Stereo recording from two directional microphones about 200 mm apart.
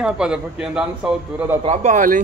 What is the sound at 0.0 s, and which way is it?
Speech, 5° right (ahead or behind).